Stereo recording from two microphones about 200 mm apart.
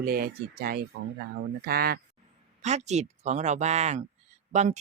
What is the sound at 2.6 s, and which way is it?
Speech, 35° right (ahead or behind).